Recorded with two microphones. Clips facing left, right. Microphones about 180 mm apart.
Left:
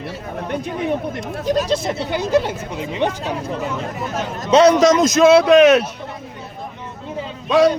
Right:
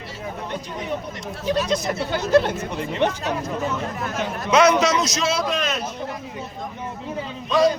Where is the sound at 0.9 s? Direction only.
50° left (ahead or behind).